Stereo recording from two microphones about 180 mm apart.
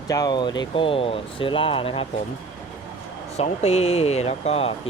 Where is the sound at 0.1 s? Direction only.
20° left (ahead or behind).